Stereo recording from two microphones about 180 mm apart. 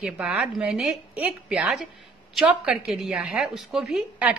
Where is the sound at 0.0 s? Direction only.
5° right (ahead or behind).